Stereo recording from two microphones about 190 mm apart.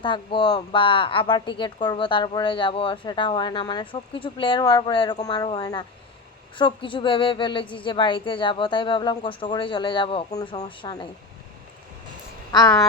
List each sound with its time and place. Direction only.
0.0 s speech: 25° left (ahead or behind)
12.5 s speech: 20° left (ahead or behind)